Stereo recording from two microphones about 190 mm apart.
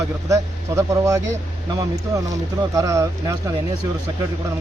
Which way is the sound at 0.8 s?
15° right (ahead or behind).